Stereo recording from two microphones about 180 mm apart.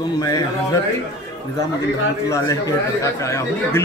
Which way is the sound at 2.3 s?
20° left (ahead or behind).